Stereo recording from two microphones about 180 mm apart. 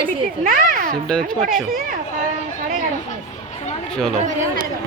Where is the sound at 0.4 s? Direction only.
50° right (ahead or behind).